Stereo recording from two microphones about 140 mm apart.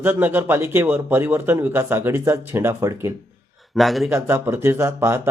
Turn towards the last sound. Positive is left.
turn(degrees=-20)  # may be behind; listen again after turning